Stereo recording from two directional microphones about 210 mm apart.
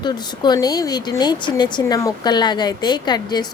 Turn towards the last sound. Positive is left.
turn(degrees=20)  # may be behind; listen again after turning